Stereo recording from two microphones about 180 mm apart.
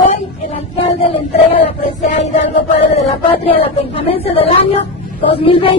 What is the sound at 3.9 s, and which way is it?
Speech, 30° left (ahead or behind).